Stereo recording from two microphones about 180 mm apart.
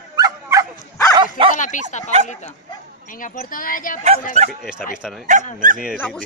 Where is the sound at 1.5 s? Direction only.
45° left (ahead or behind).